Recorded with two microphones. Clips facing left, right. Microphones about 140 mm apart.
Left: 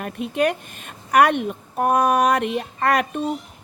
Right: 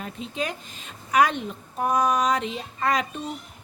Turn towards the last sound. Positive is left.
turn(degrees=60)  # may be behind; listen again after turning